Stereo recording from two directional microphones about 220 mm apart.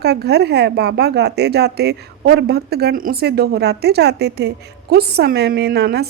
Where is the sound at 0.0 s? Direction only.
50° right (ahead or behind).